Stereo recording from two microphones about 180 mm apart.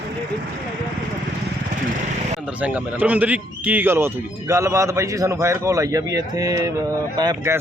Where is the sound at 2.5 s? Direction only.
10° right (ahead or behind).